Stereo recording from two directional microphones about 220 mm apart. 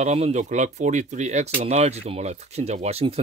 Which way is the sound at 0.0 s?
30° right (ahead or behind).